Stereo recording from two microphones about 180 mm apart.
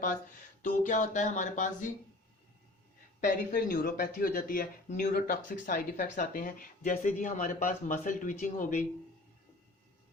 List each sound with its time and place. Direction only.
0.6 s a man's voice: 50° left (ahead or behind)
3.2 s a man's voice: 50° left (ahead or behind)